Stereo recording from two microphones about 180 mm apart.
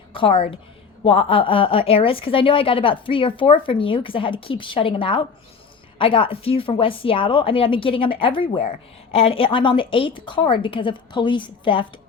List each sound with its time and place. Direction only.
0.1 s a woman's voice: 30° left (ahead or behind)